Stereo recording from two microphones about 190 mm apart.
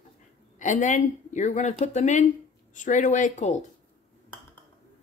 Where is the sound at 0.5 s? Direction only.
40° left (ahead or behind).